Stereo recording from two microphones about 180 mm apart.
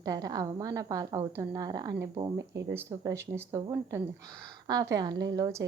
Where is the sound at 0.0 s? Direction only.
20° right (ahead or behind).